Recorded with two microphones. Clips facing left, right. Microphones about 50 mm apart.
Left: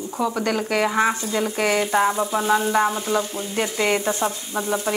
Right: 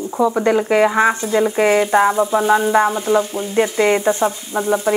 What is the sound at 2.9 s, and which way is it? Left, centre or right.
A woman's voice, centre.